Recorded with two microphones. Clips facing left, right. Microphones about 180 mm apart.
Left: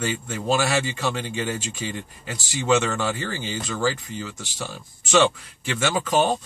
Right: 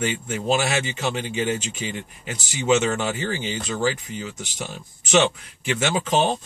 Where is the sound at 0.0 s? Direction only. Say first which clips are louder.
Right 2 dB; 20° right (ahead or behind).